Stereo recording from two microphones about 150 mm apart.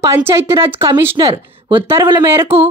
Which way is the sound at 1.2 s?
30° right (ahead or behind).